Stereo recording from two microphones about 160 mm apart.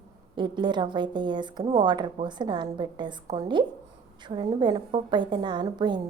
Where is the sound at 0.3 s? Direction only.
30° right (ahead or behind).